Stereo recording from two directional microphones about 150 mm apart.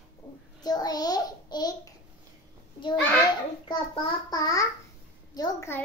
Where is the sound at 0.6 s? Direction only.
25° left (ahead or behind).